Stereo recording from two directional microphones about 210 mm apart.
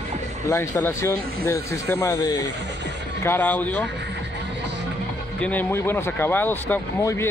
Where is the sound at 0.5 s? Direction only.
10° left (ahead or behind).